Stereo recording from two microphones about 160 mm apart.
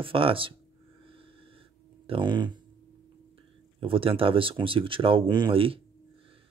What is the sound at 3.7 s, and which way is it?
Speech, 35° right (ahead or behind).